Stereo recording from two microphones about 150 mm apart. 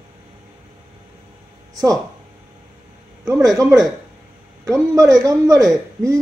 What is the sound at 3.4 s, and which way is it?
Speech, 20° right (ahead or behind).